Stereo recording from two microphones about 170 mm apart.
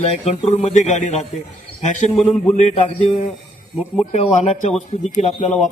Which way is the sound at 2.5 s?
40° left (ahead or behind).